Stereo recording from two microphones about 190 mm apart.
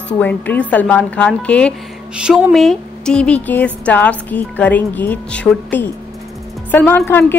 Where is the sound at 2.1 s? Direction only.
5° right (ahead or behind).